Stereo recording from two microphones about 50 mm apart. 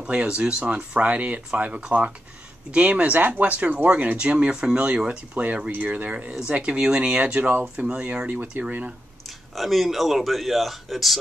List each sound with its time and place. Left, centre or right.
0.0 s speech: right
8.3 s speech: right
9.6 s speech: centre